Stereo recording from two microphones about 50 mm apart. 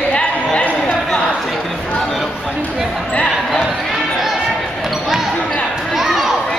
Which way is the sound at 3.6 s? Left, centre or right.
Centre.